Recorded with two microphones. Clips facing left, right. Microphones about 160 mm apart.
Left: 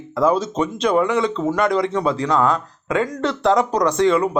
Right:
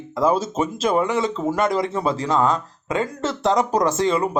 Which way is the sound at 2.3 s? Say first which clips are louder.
Left 1 dB; 20° right (ahead or behind).